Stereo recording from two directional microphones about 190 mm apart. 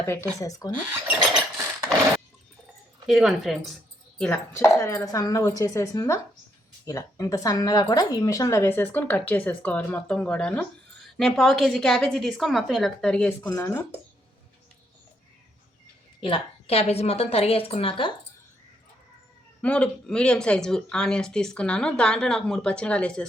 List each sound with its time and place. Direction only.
0.0 s speech: 10° left (ahead or behind)
3.1 s speech: centre (ahead or behind)
4.2 s speech: 10° left (ahead or behind)
16.2 s a woman's voice: 30° left (ahead or behind)
19.6 s speech: 5° left (ahead or behind)